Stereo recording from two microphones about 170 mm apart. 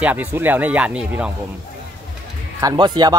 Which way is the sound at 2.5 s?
25° right (ahead or behind).